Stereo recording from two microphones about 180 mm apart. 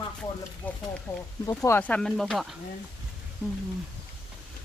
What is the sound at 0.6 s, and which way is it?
Speech, 10° left (ahead or behind).